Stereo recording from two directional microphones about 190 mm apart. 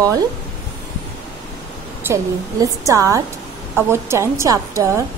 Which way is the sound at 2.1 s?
15° right (ahead or behind).